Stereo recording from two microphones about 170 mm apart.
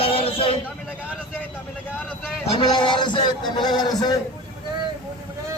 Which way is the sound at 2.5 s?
25° left (ahead or behind).